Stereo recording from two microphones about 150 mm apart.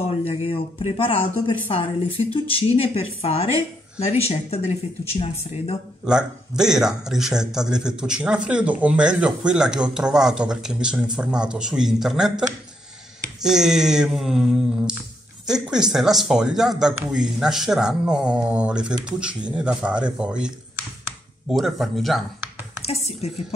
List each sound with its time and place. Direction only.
0.0 s a woman's voice: 40° left (ahead or behind)
6.0 s a man's voice: 5° right (ahead or behind)
22.8 s speech: 45° left (ahead or behind)